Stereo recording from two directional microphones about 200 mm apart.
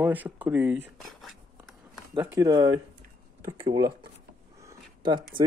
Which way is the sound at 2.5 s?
20° right (ahead or behind).